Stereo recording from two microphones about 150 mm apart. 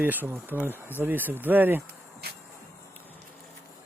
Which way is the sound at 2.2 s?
90° right.